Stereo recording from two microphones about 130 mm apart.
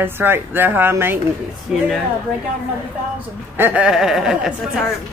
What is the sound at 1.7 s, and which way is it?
Speech, 5° right (ahead or behind).